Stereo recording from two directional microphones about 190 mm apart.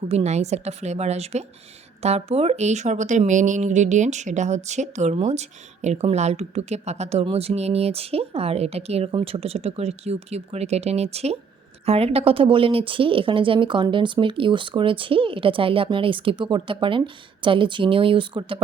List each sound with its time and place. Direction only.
0.1 s speech: 35° right (ahead or behind)